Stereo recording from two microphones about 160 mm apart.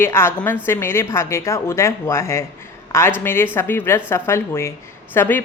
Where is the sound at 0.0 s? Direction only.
15° left (ahead or behind).